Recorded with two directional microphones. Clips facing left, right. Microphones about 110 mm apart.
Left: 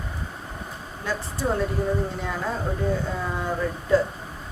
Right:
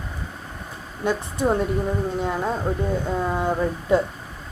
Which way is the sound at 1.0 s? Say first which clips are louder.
Right 5 dB; 20° right (ahead or behind).